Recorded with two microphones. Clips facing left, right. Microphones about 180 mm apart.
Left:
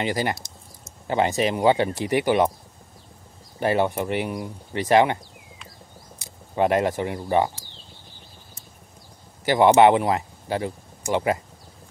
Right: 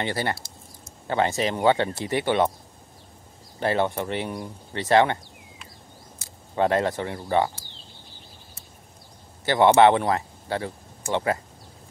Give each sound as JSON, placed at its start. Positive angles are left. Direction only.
{"t": 0.0, "sound": "speech", "side_deg": 15}
{"t": 3.5, "sound": "speech", "side_deg": 15}
{"t": 9.4, "sound": "speech", "side_deg": 15}